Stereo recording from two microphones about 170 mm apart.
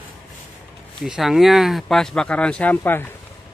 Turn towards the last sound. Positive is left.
turn(degrees=10)  # may be behind; listen again after turning